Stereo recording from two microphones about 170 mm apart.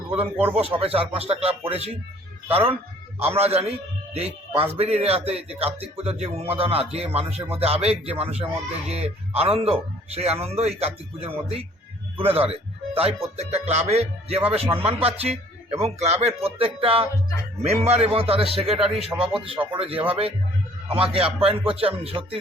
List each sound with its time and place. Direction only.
0.1 s speech: 10° right (ahead or behind)
0.5 s a man's voice: 35° right (ahead or behind)